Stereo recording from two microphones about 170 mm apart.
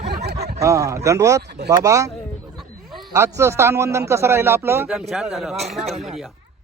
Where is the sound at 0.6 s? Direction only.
20° right (ahead or behind).